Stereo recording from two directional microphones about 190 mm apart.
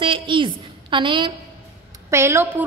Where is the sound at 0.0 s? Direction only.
25° right (ahead or behind).